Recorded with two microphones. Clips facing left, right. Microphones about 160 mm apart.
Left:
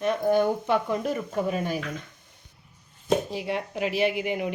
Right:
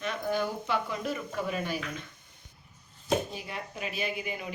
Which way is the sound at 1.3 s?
30° left (ahead or behind).